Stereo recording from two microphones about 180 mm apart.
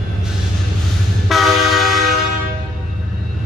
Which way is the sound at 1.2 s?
Centre (ahead or behind).